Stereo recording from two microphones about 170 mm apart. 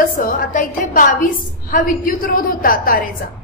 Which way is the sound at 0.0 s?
55° left (ahead or behind).